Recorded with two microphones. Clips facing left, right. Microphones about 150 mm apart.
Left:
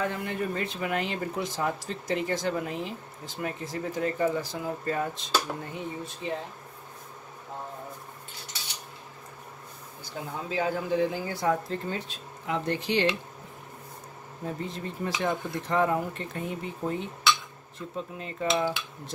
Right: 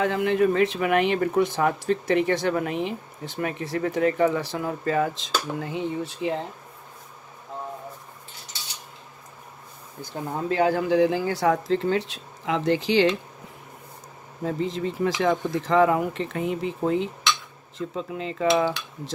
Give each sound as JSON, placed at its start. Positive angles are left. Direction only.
{"t": 0.0, "sound": "speech", "side_deg": -90}
{"t": 10.0, "sound": "speech", "side_deg": -50}
{"t": 10.6, "sound": "speech", "side_deg": -75}
{"t": 14.4, "sound": "speech", "side_deg": -90}